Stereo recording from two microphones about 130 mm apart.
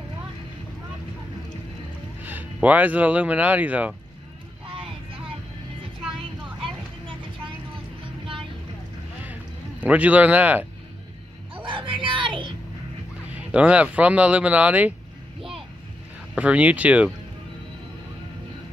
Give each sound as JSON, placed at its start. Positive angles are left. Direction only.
{"t": 2.2, "sound": "speech", "side_deg": -10}
{"t": 4.6, "sound": "vehicle", "side_deg": -40}
{"t": 9.2, "sound": "a sound", "side_deg": -10}
{"t": 11.5, "sound": "a sound", "side_deg": -40}
{"t": 13.3, "sound": "speech", "side_deg": -10}
{"t": 16.3, "sound": "speech", "side_deg": -10}